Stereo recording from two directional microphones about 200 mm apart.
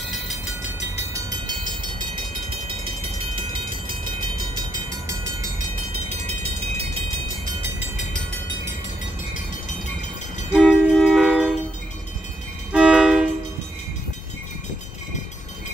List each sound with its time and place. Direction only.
0.1 s train: centre (ahead or behind)
1.1 s train: 20° right (ahead or behind)
2.5 s vehicle: 25° right (ahead or behind)
4.2 s train: 20° right (ahead or behind)
6.0 s train: 30° right (ahead or behind)
10.5 s train: 5° right (ahead or behind)
12.7 s music: 5° right (ahead or behind)